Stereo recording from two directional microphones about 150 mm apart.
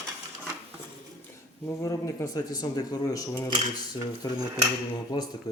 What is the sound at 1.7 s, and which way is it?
Speech, 20° left (ahead or behind).